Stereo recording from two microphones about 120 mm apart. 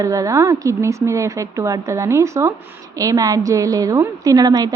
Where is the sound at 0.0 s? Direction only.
30° right (ahead or behind).